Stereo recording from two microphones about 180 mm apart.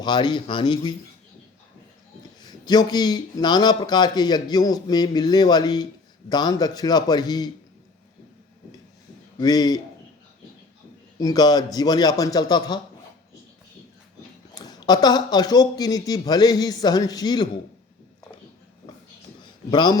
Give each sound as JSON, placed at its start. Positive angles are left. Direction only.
{"t": 0.0, "sound": "a man's voice", "side_deg": 25}
{"t": 2.4, "sound": "a man's voice", "side_deg": 20}
{"t": 9.4, "sound": "a man's voice", "side_deg": 20}
{"t": 11.2, "sound": "a man's voice", "side_deg": 20}
{"t": 14.5, "sound": "a man's voice", "side_deg": 20}
{"t": 19.7, "sound": "a man's voice", "side_deg": 25}